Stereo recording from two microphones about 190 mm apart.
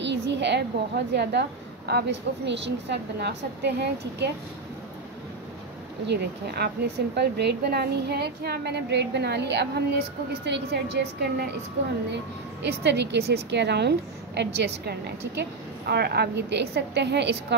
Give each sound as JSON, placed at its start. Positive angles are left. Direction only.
{"t": 0.0, "sound": "a woman's voice", "side_deg": -65}
{"t": 6.0, "sound": "a woman's voice", "side_deg": -60}
{"t": 12.6, "sound": "a woman's voice", "side_deg": -65}